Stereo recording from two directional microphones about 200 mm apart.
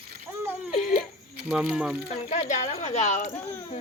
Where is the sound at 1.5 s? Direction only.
5° right (ahead or behind).